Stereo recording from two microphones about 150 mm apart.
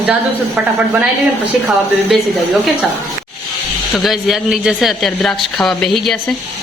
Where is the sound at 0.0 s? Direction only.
10° right (ahead or behind).